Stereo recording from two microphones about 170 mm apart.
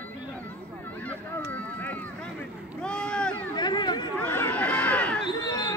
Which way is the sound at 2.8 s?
5° left (ahead or behind).